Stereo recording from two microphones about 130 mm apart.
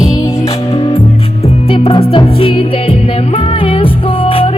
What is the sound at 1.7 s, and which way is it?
Music, 40° left (ahead or behind).